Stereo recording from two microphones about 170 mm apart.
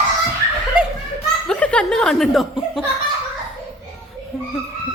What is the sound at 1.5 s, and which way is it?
Chuckle, 5° left (ahead or behind).